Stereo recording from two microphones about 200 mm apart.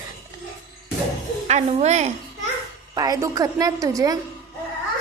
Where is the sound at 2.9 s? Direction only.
20° right (ahead or behind).